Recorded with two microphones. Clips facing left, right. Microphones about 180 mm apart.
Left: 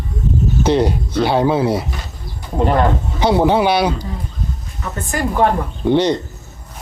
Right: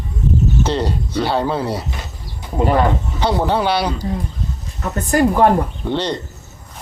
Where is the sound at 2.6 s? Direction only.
5° right (ahead or behind).